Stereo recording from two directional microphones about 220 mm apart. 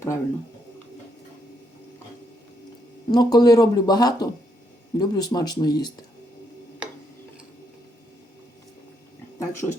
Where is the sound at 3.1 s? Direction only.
20° left (ahead or behind).